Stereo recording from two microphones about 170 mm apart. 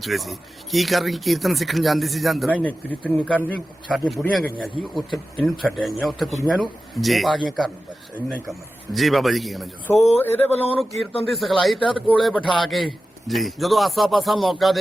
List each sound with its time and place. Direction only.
0.0 s speech: centre (ahead or behind)
9.9 s speech: 40° left (ahead or behind)
10.8 s speech: centre (ahead or behind)